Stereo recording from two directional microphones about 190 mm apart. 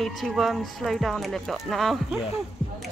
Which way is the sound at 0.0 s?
Centre (ahead or behind).